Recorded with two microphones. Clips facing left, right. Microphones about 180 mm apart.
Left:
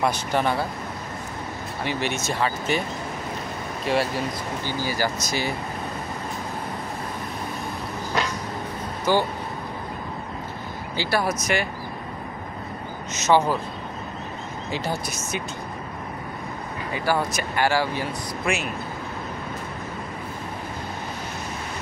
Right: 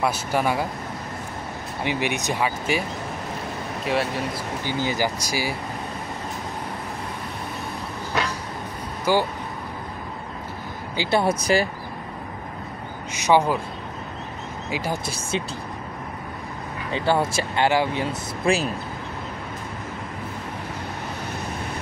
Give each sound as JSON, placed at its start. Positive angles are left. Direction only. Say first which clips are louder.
{"t": 0.0, "sound": "speech", "louder": "even", "side_deg": -5}
{"t": 1.9, "sound": "speech", "louder": "right 2 dB", "side_deg": -15}
{"t": 3.8, "sound": "speech", "louder": "left 1 dB", "side_deg": 0}
{"t": 4.6, "sound": "speech", "louder": "right 2 dB", "side_deg": -20}
{"t": 9.1, "sound": "speech", "louder": "even", "side_deg": -10}
{"t": 11.0, "sound": "speech", "louder": "right 3 dB", "side_deg": -25}
{"t": 13.1, "sound": "speech", "louder": "right 1 dB", "side_deg": -15}
{"t": 14.7, "sound": "speech", "louder": "right 1 dB", "side_deg": -10}
{"t": 15.0, "sound": "speech", "louder": "right 3 dB", "side_deg": -30}
{"t": 16.9, "sound": "speech", "louder": "right 3 dB", "side_deg": -25}